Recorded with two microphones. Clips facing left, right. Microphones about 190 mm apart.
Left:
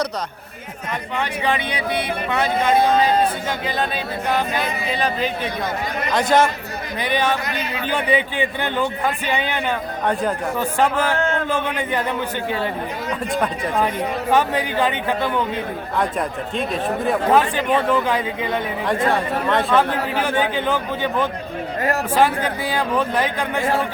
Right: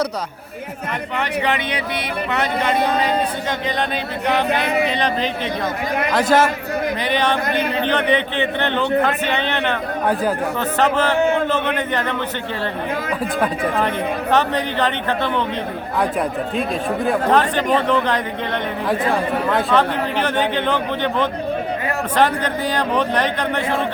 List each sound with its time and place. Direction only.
4.4 s speech: 65° right (ahead or behind)
4.9 s a man's voice: 5° left (ahead or behind)
6.3 s speech: 5° right (ahead or behind)
7.1 s a man's voice: 10° left (ahead or behind)
10.8 s a man's voice: 10° left (ahead or behind)
13.1 s speech: 5° right (ahead or behind)
13.8 s a man's voice: 10° left (ahead or behind)
17.1 s a man's voice: 10° left (ahead or behind)
18.9 s speech: centre (ahead or behind)
19.7 s a man's voice: 10° left (ahead or behind)